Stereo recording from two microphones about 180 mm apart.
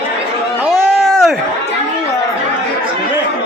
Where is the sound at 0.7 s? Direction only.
5° left (ahead or behind).